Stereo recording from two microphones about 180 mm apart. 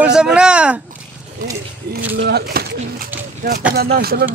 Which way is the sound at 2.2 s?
60° right (ahead or behind).